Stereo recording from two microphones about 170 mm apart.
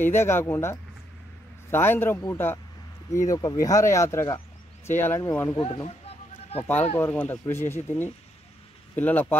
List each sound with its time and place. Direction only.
0.0 s speech: 15° left (ahead or behind)
6.0 s a sound: 35° left (ahead or behind)
7.0 s speech: 10° left (ahead or behind)